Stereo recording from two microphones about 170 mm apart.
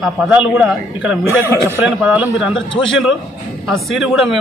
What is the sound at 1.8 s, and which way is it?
Speech, 5° right (ahead or behind).